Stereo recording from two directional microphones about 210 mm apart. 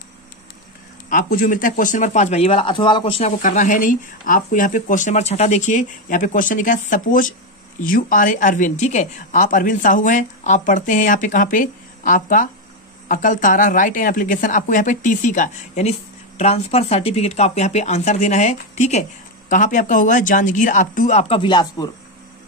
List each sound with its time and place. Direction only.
1.1 s speech: 40° left (ahead or behind); by 21.9 s 20° left (ahead or behind)